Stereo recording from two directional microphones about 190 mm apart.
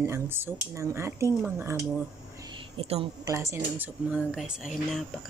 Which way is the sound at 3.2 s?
15° right (ahead or behind).